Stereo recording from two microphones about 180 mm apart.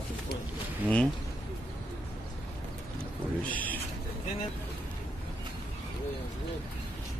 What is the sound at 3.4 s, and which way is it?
Speech, 10° left (ahead or behind).